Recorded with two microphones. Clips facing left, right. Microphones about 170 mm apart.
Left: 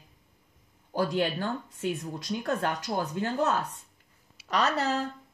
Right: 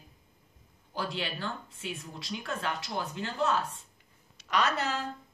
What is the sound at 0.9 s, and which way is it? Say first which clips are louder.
Speech: left 8 dB; 50° left (ahead or behind).